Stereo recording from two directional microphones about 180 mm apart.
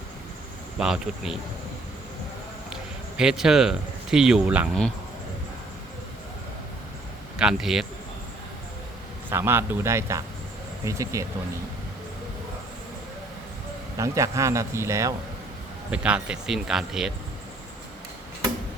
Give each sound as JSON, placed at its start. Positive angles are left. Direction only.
{"t": 0.8, "sound": "speech", "side_deg": -5}
{"t": 3.2, "sound": "speech", "side_deg": -5}
{"t": 7.3, "sound": "speech", "side_deg": -5}
{"t": 9.3, "sound": "a man's voice", "side_deg": -15}
{"t": 14.0, "sound": "a man's voice", "side_deg": -15}